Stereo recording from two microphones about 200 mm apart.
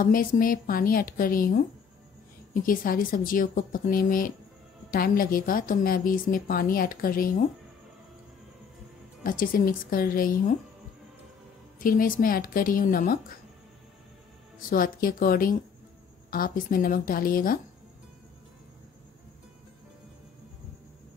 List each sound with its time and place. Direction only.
0.0 s a woman's voice: 45° left (ahead or behind)
9.2 s a woman's voice: 45° left (ahead or behind)
11.8 s a woman's voice: 45° left (ahead or behind)
14.7 s a woman's voice: 45° left (ahead or behind)